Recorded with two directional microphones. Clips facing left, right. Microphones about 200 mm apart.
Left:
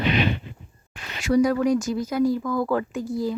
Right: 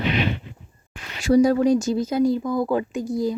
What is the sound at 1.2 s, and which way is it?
Speech, 30° right (ahead or behind).